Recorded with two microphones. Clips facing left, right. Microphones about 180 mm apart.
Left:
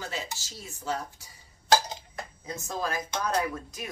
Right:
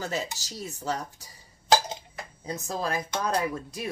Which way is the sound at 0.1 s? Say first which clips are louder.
Right 5 dB; 40° right (ahead or behind).